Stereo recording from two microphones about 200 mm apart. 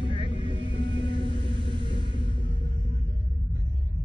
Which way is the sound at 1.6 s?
25° right (ahead or behind).